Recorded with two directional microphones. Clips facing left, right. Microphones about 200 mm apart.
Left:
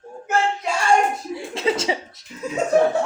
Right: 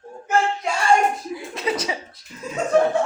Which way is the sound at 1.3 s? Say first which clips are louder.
Left 3 dB; 25° left (ahead or behind).